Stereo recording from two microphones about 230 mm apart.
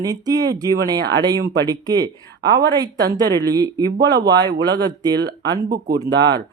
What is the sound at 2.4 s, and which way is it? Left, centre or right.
Speech, right.